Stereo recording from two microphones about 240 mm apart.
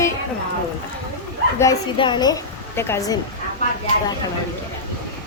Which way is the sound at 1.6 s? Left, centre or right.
Centre.